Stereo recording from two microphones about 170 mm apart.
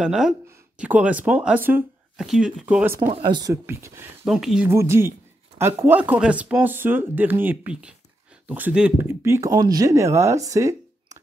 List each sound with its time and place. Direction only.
0.0 s speech: 5° right (ahead or behind)
3.1 s speech: 30° right (ahead or behind)
3.6 s speech: 15° right (ahead or behind)
4.3 s speech: centre (ahead or behind)
4.6 s speech: 15° right (ahead or behind)